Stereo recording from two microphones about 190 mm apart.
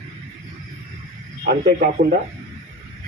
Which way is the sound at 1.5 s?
55° right (ahead or behind).